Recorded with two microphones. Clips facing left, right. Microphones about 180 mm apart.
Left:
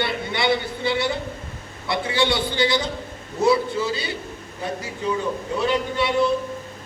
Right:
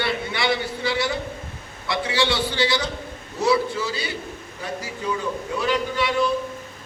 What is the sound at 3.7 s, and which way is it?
Speech, 25° left (ahead or behind).